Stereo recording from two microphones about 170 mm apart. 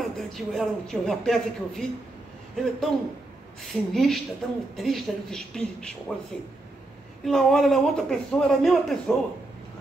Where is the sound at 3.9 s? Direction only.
Centre (ahead or behind).